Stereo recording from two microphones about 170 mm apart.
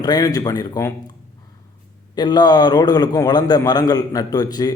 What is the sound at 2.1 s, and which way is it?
A man's voice, 25° left (ahead or behind).